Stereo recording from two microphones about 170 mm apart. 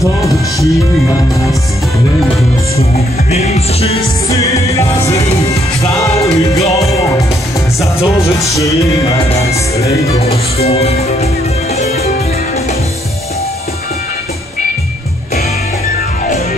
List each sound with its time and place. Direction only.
0.0 s music: 20° left (ahead or behind)
2.8 s music: 40° left (ahead or behind)
4.3 s music: 20° left (ahead or behind)
9.5 s music: 40° left (ahead or behind)